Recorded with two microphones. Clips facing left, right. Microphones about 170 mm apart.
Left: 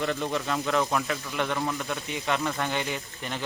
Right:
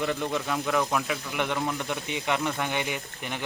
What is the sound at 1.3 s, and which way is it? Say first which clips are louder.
Speech: even; 15° right (ahead or behind).